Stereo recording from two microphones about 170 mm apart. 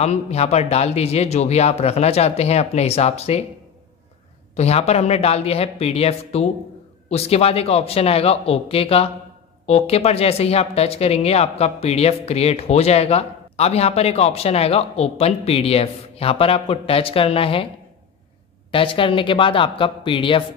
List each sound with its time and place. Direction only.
0.0 s speech: 40° left (ahead or behind)
4.6 s speech: 40° left (ahead or behind)
18.7 s speech: 30° left (ahead or behind)